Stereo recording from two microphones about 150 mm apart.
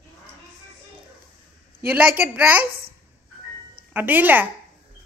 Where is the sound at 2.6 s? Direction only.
85° right.